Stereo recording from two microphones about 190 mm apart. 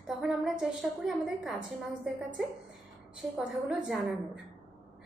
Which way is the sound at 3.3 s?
5° right (ahead or behind).